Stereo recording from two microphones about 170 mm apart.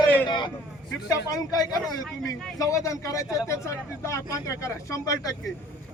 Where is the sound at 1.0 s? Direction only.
20° left (ahead or behind).